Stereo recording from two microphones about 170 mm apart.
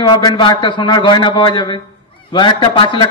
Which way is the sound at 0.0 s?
25° left (ahead or behind).